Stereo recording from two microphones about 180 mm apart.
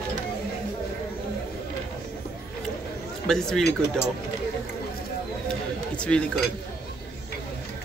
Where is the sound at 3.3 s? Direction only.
5° left (ahead or behind).